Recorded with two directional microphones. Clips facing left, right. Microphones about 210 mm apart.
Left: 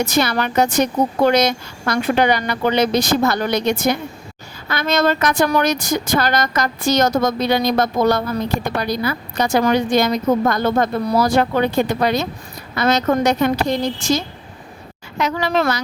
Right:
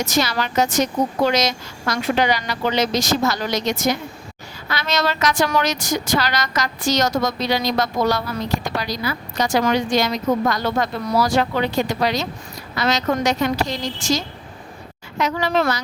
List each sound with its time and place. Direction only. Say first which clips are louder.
0.2 s a woman's voice: left 2 dB; 55° left (ahead or behind)